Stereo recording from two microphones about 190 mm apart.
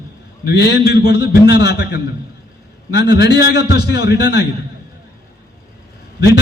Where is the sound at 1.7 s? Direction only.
60° left (ahead or behind).